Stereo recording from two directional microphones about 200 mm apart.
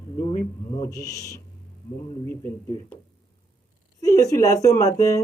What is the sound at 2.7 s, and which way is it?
Speech, 20° left (ahead or behind).